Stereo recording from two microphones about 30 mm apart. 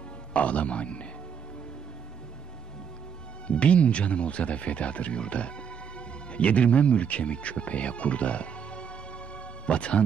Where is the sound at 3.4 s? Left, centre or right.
Left.